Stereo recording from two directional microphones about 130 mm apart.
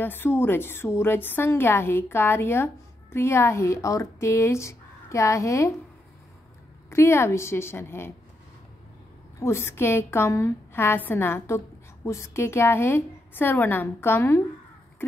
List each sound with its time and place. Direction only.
0.0 s a woman's voice: 15° left (ahead or behind)
6.9 s a woman's voice: 20° left (ahead or behind)
9.4 s a woman's voice: 20° left (ahead or behind)